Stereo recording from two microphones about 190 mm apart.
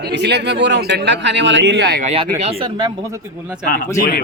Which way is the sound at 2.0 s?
35° right (ahead or behind).